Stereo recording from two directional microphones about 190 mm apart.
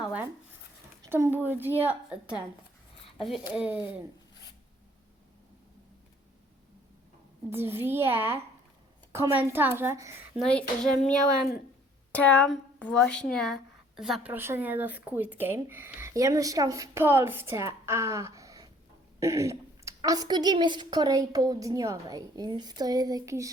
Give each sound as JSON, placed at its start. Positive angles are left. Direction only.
{"t": 1.0, "sound": "a woman's voice", "side_deg": -15}
{"t": 3.2, "sound": "a woman's voice", "side_deg": 30}
{"t": 3.5, "sound": "a woman's voice", "side_deg": -5}
{"t": 7.5, "sound": "a woman's voice", "side_deg": -10}
{"t": 10.3, "sound": "a child's voice", "side_deg": 5}
{"t": 12.1, "sound": "a woman's voice", "side_deg": 5}